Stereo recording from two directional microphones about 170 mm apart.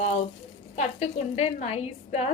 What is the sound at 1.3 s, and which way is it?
Speech, 40° left (ahead or behind).